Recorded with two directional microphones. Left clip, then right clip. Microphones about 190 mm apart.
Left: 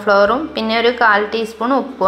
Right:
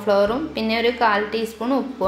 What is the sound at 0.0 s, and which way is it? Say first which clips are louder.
A woman's voice: left 6 dB; 10° left (ahead or behind).